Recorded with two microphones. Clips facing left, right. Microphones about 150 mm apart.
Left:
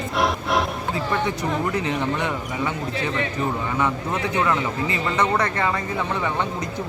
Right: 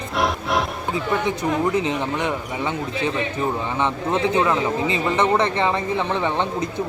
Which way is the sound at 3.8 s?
25° right (ahead or behind).